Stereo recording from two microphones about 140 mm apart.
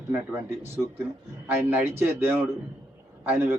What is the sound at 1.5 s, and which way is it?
Speech, 15° right (ahead or behind).